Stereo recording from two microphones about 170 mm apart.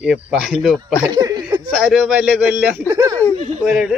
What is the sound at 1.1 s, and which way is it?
Chuckle, 25° right (ahead or behind).